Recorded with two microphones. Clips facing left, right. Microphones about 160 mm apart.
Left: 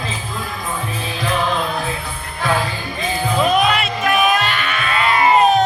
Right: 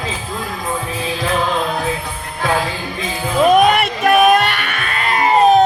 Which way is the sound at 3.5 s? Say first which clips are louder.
Right 5 dB; 50° right (ahead or behind).